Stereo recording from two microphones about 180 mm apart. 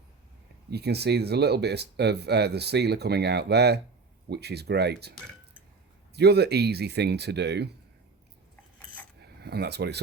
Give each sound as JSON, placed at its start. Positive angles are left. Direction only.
{"t": 0.7, "sound": "speech", "side_deg": -65}
{"t": 6.1, "sound": "speech", "side_deg": -65}
{"t": 9.2, "sound": "speech", "side_deg": -65}